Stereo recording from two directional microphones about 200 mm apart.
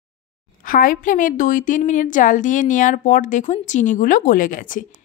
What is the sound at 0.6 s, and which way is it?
A woman's voice, 45° left (ahead or behind).